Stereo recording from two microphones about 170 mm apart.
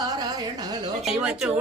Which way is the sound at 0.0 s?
25° right (ahead or behind).